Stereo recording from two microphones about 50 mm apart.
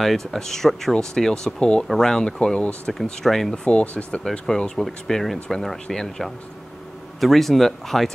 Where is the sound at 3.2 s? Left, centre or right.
Centre.